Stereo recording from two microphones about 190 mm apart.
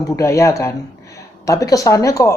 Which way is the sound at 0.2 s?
15° left (ahead or behind).